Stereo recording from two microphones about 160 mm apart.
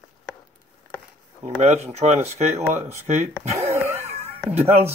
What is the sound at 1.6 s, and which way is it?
Speech, 45° right (ahead or behind).